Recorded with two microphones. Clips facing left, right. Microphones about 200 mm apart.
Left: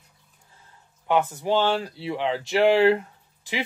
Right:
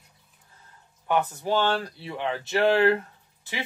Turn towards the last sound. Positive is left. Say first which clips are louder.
# left 5 dB
turn(degrees=15)  # may be behind; listen again after turning